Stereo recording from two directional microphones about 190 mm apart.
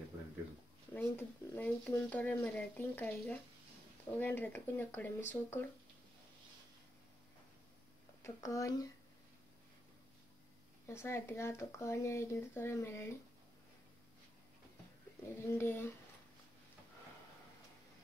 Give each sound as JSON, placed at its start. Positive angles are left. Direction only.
{"t": 0.9, "sound": "speech", "side_deg": 10}
{"t": 8.2, "sound": "speech", "side_deg": 15}
{"t": 10.9, "sound": "speech", "side_deg": 15}
{"t": 15.3, "sound": "speech", "side_deg": 15}